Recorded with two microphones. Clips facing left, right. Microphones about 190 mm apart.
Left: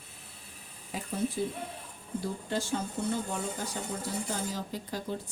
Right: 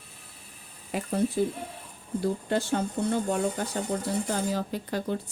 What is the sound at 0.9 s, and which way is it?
Speech, 65° right (ahead or behind).